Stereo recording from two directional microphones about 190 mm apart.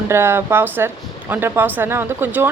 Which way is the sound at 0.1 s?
10° right (ahead or behind).